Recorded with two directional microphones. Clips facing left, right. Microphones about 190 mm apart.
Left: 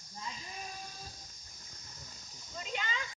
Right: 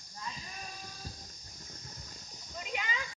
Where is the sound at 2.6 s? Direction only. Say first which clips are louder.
Right 1 dB; 5° right (ahead or behind).